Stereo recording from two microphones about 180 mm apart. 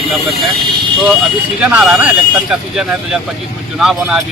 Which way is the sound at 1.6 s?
5° right (ahead or behind).